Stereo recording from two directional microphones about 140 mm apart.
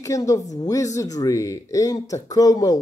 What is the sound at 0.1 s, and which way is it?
Speech, 25° left (ahead or behind).